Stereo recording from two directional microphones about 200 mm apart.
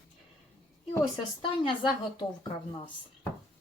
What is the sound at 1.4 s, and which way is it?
Speech, 25° left (ahead or behind).